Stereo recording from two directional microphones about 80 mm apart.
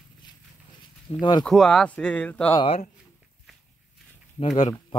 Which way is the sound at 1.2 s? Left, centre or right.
Left.